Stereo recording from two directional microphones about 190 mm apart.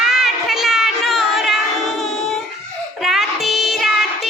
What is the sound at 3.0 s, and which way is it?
Music, centre (ahead or behind).